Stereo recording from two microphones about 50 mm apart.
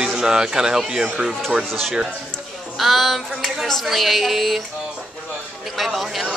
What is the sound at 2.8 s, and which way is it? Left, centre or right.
Speech, centre.